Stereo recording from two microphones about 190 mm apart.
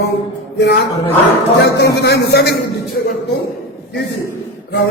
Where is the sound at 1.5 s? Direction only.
60° left (ahead or behind).